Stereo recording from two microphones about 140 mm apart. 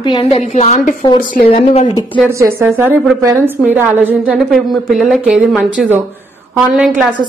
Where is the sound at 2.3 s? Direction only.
20° right (ahead or behind).